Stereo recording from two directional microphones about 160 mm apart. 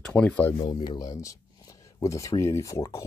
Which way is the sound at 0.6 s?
30° left (ahead or behind).